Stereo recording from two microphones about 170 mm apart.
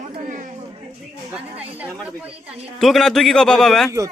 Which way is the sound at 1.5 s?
10° right (ahead or behind).